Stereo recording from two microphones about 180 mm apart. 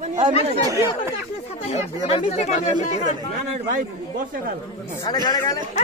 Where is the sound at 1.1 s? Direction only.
35° left (ahead or behind).